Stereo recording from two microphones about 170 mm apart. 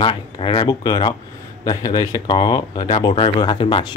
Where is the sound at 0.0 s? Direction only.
30° left (ahead or behind).